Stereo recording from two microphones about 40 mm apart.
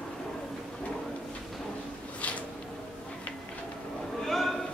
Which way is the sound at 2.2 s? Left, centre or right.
Left.